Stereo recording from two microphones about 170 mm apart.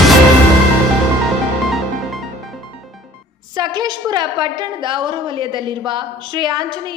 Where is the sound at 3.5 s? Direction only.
25° right (ahead or behind).